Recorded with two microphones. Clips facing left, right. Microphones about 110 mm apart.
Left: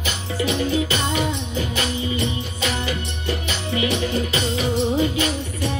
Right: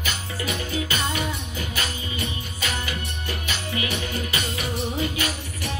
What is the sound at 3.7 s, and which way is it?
Music, 25° left (ahead or behind).